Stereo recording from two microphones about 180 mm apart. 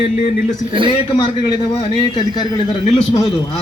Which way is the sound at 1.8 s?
25° left (ahead or behind).